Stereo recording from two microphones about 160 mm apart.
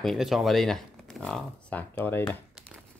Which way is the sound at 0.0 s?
Centre (ahead or behind).